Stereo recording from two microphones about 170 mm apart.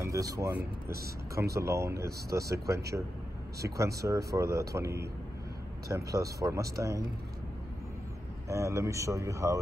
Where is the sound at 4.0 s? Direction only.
20° right (ahead or behind).